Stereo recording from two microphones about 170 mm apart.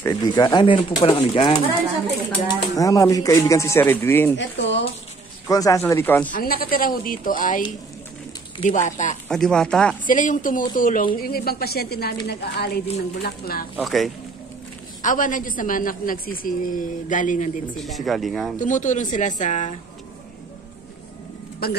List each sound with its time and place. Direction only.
0.0 s speech: 20° left (ahead or behind)
2.4 s speech: 20° left (ahead or behind)
4.6 s speech: 90° left
5.5 s speech: 20° left (ahead or behind)
6.3 s speech: 60° left (ahead or behind)
8.6 s a woman's voice: 45° left (ahead or behind)
9.3 s speech: 5° left (ahead or behind)
10.0 s a woman's voice: 50° left (ahead or behind); by 12.8 s 70° left (ahead or behind)
13.2 s speech: 60° left (ahead or behind)
13.7 s speech: centre (ahead or behind)
15.0 s a woman's voice: 50° left (ahead or behind)
17.7 s speech: centre (ahead or behind)
18.6 s a woman's voice: 50° left (ahead or behind)
21.6 s speech: 65° left (ahead or behind)